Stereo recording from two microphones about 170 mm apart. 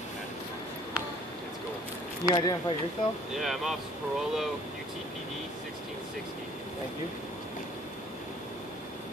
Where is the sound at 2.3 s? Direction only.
20° left (ahead or behind).